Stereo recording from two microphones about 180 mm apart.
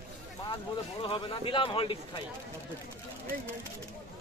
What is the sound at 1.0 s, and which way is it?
Speech, 30° left (ahead or behind).